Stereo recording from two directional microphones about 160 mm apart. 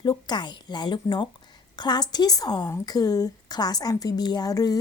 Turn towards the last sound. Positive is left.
turn(degrees=25)  # may be behind; listen again after turning